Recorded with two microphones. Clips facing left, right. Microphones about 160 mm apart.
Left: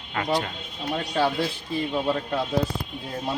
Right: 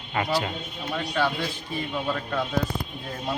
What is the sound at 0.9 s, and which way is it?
Speech, 35° left (ahead or behind).